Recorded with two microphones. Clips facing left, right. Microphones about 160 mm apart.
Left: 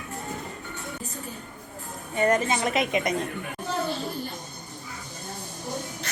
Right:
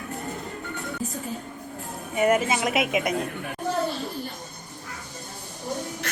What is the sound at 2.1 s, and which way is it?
A woman's voice, 10° right (ahead or behind).